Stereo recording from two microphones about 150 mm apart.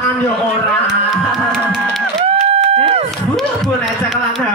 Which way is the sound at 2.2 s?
45° right (ahead or behind).